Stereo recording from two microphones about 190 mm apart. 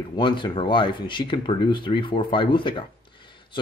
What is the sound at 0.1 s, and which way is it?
Speech, 25° left (ahead or behind).